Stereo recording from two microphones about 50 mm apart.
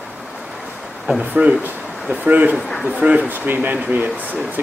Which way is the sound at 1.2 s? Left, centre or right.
Right.